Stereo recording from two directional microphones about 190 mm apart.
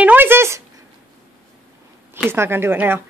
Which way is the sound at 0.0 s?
10° right (ahead or behind).